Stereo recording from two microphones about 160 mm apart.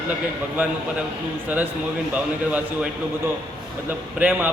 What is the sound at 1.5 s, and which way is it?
A man's voice, 10° right (ahead or behind).